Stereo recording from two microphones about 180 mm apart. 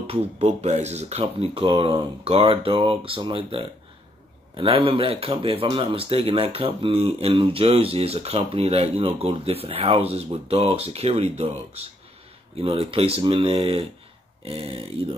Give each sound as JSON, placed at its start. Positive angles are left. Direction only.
{"t": 0.0, "sound": "speech", "side_deg": -35}